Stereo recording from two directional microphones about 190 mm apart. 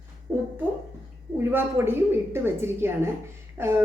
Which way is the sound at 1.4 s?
10° right (ahead or behind).